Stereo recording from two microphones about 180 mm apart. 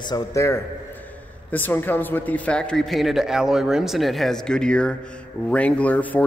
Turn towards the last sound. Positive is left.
turn(degrees=10)  # may be behind; listen again after turning